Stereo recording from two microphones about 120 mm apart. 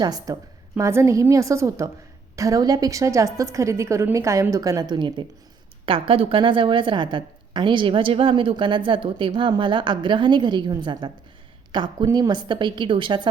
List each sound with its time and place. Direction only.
0.0 s a woman's voice: 30° right (ahead or behind)
12.0 s a woman's voice: 25° right (ahead or behind)
12.3 s a woman's voice: 40° right (ahead or behind)